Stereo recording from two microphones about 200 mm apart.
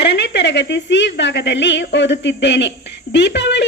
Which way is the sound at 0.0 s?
60° left (ahead or behind).